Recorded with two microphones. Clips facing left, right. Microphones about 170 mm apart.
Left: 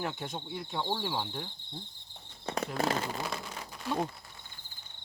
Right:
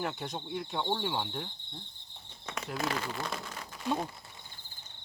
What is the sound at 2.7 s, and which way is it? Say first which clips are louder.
Speech: left 2 dB; 30° left (ahead or behind).